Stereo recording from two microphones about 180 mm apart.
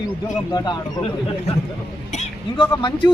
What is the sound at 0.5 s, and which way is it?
Speech, 25° left (ahead or behind).